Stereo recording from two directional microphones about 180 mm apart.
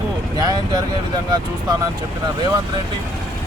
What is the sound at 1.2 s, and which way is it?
Speech, 20° right (ahead or behind).